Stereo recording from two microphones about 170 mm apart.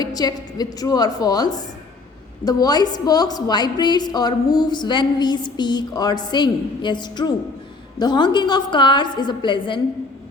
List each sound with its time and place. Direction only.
0.0 s a woman's voice: 25° left (ahead or behind)